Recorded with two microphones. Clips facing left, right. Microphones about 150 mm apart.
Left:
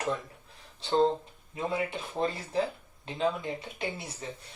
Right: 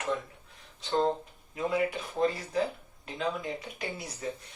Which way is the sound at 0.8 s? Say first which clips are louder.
Left 2 dB; 30° left (ahead or behind).